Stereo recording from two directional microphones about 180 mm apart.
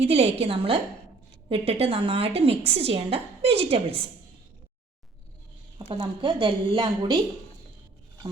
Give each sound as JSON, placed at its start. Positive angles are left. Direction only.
{"t": 0.0, "sound": "a woman's voice", "side_deg": -35}
{"t": 5.9, "sound": "a woman's voice", "side_deg": -25}